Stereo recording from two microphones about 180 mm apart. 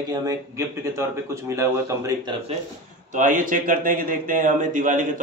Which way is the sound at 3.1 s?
45° right (ahead or behind).